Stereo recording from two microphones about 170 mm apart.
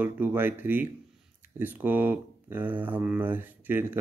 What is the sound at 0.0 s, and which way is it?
Speech, 10° right (ahead or behind).